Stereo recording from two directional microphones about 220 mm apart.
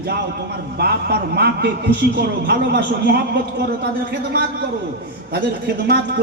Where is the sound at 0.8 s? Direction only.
45° right (ahead or behind).